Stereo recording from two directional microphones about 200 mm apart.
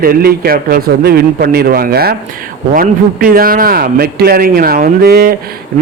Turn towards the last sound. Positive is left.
turn(degrees=-50)  # may be behind; listen again after turning